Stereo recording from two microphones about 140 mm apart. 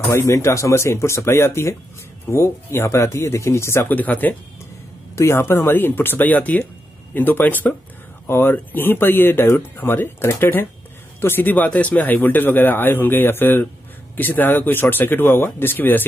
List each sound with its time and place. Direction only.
0.1 s a man's voice: 20° left (ahead or behind)